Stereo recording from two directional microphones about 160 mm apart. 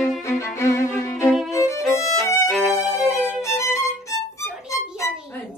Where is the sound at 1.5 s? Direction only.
20° left (ahead or behind).